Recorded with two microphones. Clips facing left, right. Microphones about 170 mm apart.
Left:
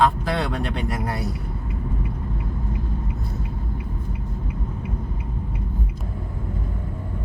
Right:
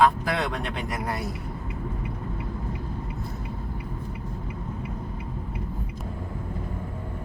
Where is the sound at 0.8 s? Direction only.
30° left (ahead or behind).